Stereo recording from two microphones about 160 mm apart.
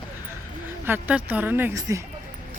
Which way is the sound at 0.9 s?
10° right (ahead or behind).